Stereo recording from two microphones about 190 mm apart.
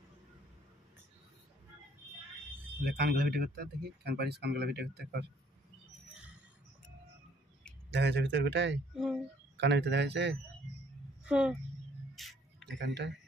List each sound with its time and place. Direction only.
2.8 s speech: 60° right (ahead or behind)
7.9 s speech: 70° right (ahead or behind)
8.9 s speech: 5° right (ahead or behind)
9.6 s speech: 65° right (ahead or behind)
11.2 s speech: 5° right (ahead or behind)
12.2 s a sound: centre (ahead or behind)
12.6 s speech: 65° right (ahead or behind)